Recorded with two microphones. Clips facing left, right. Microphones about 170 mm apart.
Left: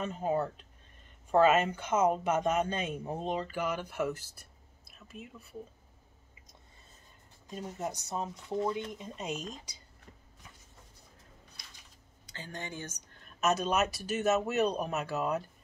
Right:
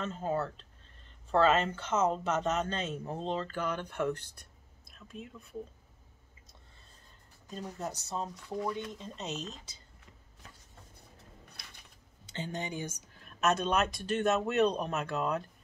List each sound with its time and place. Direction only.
0.0 s speech: 15° left (ahead or behind)
7.6 s speech: 20° left (ahead or behind)
12.3 s speech: 20° right (ahead or behind); by 15.5 s 5° left (ahead or behind)